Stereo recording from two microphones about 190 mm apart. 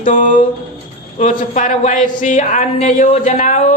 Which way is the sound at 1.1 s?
40° left (ahead or behind).